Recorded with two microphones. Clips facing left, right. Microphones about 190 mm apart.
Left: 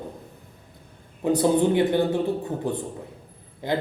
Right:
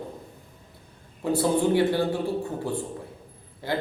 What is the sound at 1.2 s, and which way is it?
Speech, 20° left (ahead or behind).